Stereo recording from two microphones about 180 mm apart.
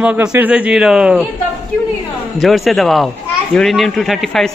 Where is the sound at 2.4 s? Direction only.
Centre (ahead or behind).